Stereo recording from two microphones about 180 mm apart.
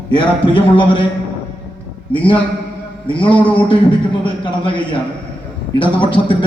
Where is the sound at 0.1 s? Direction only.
25° left (ahead or behind).